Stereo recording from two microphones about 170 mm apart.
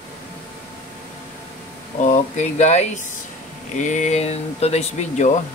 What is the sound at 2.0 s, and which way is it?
Speech, 45° left (ahead or behind).